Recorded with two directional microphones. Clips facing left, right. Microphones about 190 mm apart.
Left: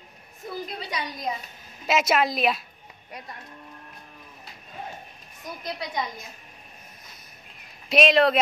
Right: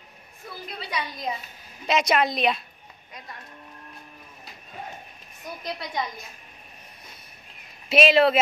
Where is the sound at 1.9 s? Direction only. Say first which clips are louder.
Even; 5° left (ahead or behind).